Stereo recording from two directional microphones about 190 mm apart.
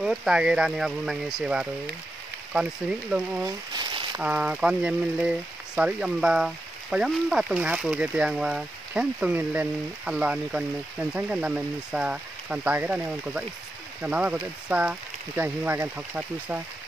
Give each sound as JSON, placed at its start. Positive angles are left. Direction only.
{"t": 0.0, "sound": "speech", "side_deg": -5}
{"t": 3.4, "sound": "a sound", "side_deg": -20}
{"t": 4.2, "sound": "speech", "side_deg": -5}